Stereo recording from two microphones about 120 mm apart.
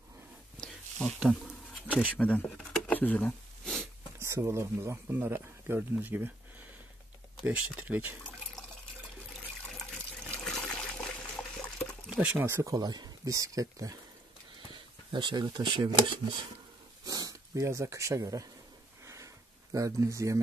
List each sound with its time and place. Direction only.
0.6 s a sound: 5° left (ahead or behind)
2.1 s speech: 10° left (ahead or behind)
3.0 s a sound: 10° left (ahead or behind)
4.2 s speech: 20° right (ahead or behind)
7.4 s speech: 15° right (ahead or behind)
9.7 s water: 5° left (ahead or behind)
12.1 s speech: 10° right (ahead or behind)
12.4 s speech: 25° right (ahead or behind)
14.7 s speech: 40° right (ahead or behind)
17.0 s a sound: 30° right (ahead or behind)